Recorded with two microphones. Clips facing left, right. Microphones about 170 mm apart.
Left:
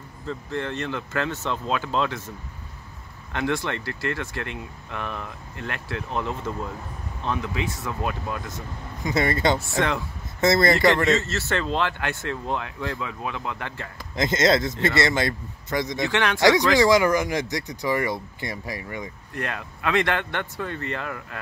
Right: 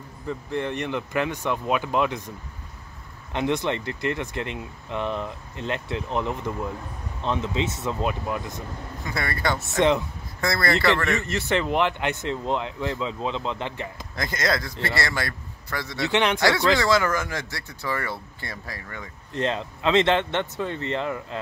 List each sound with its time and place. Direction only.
0.3 s speech: 15° right (ahead or behind)
3.3 s speech: 20° right (ahead or behind)
9.0 s a man's voice: 20° left (ahead or behind)
9.7 s speech: 20° right (ahead or behind)
10.4 s a man's voice: 20° left (ahead or behind)
11.2 s speech: 15° right (ahead or behind)
14.1 s a man's voice: 20° left (ahead or behind)
16.1 s speech: 20° right (ahead or behind)
16.3 s speech: 20° left (ahead or behind)
19.3 s speech: 25° right (ahead or behind)